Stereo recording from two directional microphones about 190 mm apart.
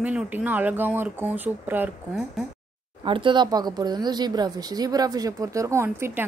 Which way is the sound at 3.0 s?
25° right (ahead or behind).